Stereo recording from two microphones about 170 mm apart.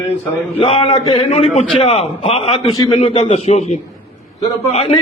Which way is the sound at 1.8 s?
40° left (ahead or behind).